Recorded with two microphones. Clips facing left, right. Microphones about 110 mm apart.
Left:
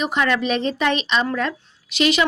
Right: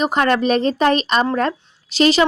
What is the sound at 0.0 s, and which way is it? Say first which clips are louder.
Speech: right 4 dB; 45° right (ahead or behind).